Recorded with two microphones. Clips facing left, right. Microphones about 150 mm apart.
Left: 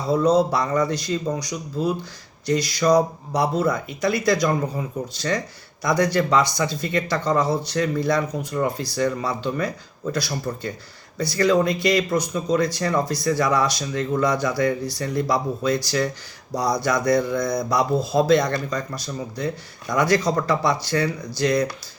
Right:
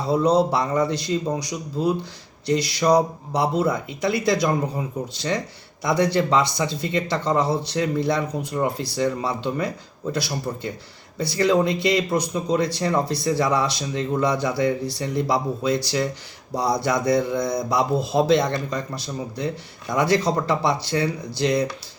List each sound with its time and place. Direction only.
0.1 s speech: 25° right (ahead or behind)